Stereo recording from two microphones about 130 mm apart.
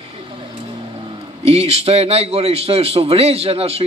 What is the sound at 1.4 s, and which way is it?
A man's voice, 50° right (ahead or behind).